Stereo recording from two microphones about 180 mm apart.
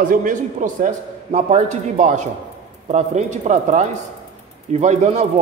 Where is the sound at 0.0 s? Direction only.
50° right (ahead or behind).